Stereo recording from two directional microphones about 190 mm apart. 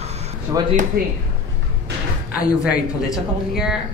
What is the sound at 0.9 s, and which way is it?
Speech, 55° right (ahead or behind).